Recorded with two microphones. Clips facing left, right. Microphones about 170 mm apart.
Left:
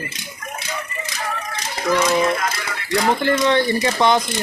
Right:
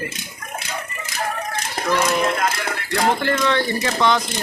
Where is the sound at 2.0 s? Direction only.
55° right (ahead or behind).